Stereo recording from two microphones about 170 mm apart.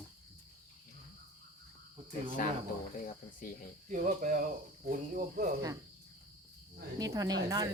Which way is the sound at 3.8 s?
50° right (ahead or behind).